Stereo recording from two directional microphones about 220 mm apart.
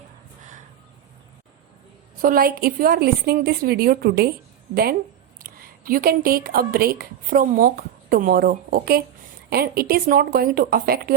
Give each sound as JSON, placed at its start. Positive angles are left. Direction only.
{"t": 2.2, "sound": "a woman's voice", "side_deg": -40}